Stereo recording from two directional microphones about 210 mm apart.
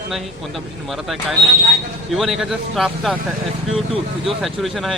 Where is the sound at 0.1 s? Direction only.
Centre (ahead or behind).